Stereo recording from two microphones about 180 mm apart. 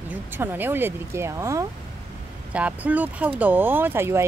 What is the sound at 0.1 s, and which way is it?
Speech, 10° right (ahead or behind).